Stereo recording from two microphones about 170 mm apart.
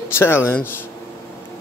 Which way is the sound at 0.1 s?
15° left (ahead or behind).